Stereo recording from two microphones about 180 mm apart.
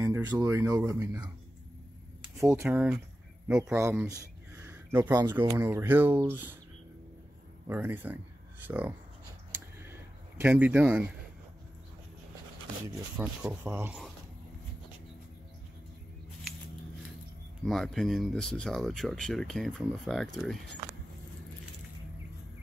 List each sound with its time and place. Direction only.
0.0 s speech: 15° right (ahead or behind)
2.3 s speech: 15° right (ahead or behind)
4.6 s a sound: 15° right (ahead or behind)
5.4 s speech: 15° right (ahead or behind)
7.6 s speech: 10° right (ahead or behind)
9.5 s a sound: 15° right (ahead or behind)
10.4 s speech: 10° right (ahead or behind)
12.8 s speech: 10° right (ahead or behind)
17.6 s speech: centre (ahead or behind)